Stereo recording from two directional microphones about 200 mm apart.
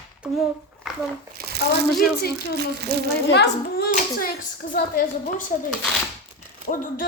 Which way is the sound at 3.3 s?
55° left (ahead or behind).